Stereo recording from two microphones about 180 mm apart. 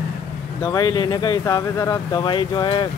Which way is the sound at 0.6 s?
20° left (ahead or behind).